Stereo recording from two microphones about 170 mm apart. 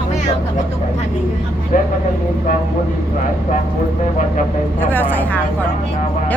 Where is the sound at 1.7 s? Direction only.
50° left (ahead or behind).